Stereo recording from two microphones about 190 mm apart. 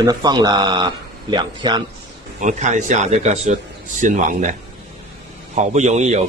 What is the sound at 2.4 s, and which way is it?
Speech, 40° right (ahead or behind).